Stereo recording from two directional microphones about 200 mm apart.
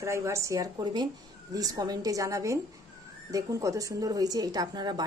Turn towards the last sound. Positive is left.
turn(degrees=-20)  # may be behind; listen again after turning